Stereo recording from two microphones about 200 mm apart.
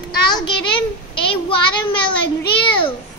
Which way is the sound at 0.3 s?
25° left (ahead or behind).